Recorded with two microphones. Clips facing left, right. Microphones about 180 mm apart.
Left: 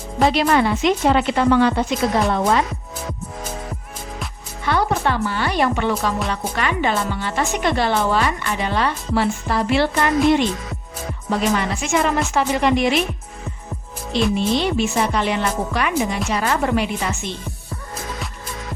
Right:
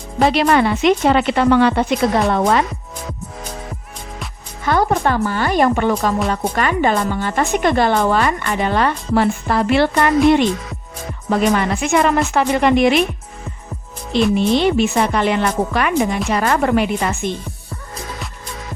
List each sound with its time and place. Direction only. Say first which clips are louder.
0.3 s a woman's voice: right 2 dB; 65° right (ahead or behind)
4.6 s a woman's voice: right 3 dB; 45° right (ahead or behind)
14.3 s a woman's voice: right 4 dB; 55° right (ahead or behind)